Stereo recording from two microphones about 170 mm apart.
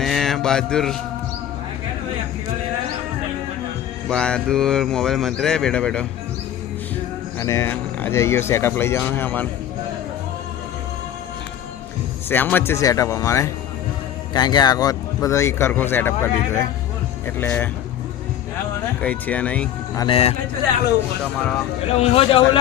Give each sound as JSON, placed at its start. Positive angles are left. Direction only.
{"t": 0.0, "sound": "mantra", "side_deg": 0}
{"t": 4.1, "sound": "speech", "side_deg": 5}
{"t": 7.3, "sound": "speech", "side_deg": 15}
{"t": 12.3, "sound": "speech", "side_deg": 10}
{"t": 19.0, "sound": "speech", "side_deg": 10}
{"t": 20.0, "sound": "a man's voice", "side_deg": 30}
{"t": 21.9, "sound": "a man's voice", "side_deg": 35}